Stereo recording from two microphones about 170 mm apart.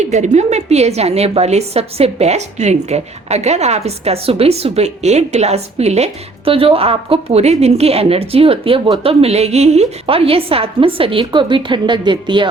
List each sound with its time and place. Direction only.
0.0 s a woman's voice: 45° right (ahead or behind); by 12.5 s 30° right (ahead or behind)